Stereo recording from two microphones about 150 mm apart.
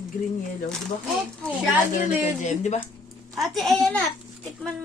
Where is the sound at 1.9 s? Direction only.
55° left (ahead or behind).